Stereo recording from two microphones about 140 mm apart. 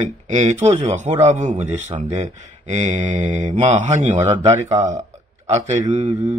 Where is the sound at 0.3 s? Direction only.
55° right (ahead or behind).